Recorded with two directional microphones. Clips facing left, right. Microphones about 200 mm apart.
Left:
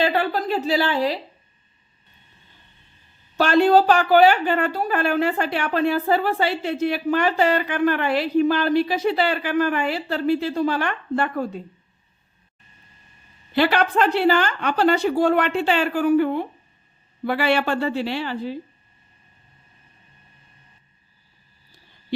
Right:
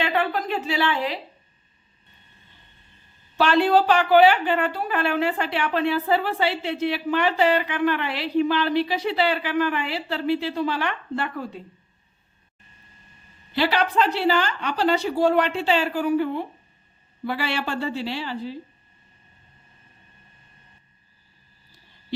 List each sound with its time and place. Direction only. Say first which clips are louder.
0.0 s a woman's voice: left 3 dB; 35° left (ahead or behind)
3.3 s a woman's voice: left 3 dB; 45° left (ahead or behind)
13.6 s a woman's voice: left 3 dB; 50° left (ahead or behind)